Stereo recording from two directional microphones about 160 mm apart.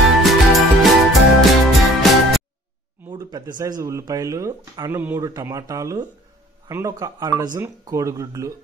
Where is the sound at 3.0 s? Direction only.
20° right (ahead or behind).